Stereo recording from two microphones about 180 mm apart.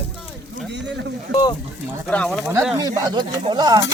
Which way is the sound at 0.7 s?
75° right (ahead or behind).